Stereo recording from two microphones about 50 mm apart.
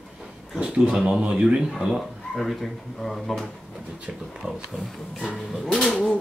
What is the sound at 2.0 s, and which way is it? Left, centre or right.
Speech, centre.